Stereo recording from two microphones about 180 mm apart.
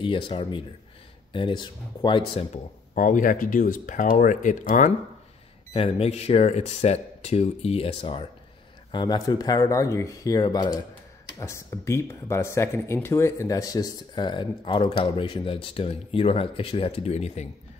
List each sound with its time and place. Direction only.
0.0 s speech: 30° left (ahead or behind)
2.9 s speech: 45° left (ahead or behind)
5.7 s speech: 35° left (ahead or behind)